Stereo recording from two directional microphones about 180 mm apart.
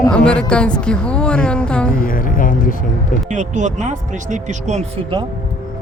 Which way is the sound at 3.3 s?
40° right (ahead or behind).